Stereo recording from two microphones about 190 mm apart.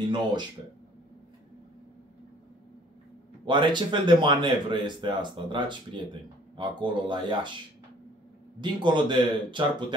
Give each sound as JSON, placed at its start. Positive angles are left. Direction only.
{"t": 0.1, "sound": "speech", "side_deg": -25}
{"t": 3.4, "sound": "speech", "side_deg": -25}
{"t": 8.5, "sound": "speech", "side_deg": -25}